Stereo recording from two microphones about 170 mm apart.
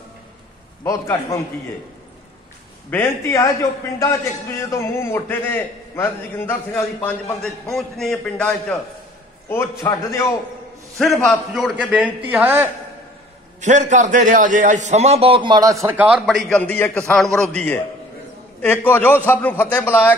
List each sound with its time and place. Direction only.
0.8 s a man's voice: 20° left (ahead or behind)
2.9 s a man's voice: 15° left (ahead or behind)
7.7 s a man's voice: centre (ahead or behind)
9.5 s a man's voice: 15° left (ahead or behind)
11.1 s a man's voice: centre (ahead or behind)
13.6 s a man's voice: 45° right (ahead or behind); by 20.2 s 10° left (ahead or behind)